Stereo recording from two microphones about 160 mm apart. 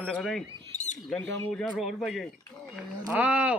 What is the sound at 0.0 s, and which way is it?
Speech, 5° left (ahead or behind).